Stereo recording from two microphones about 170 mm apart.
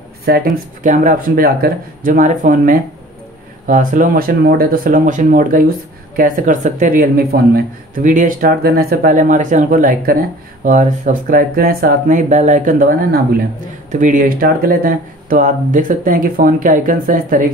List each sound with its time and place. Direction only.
0.2 s speech: 60° right (ahead or behind)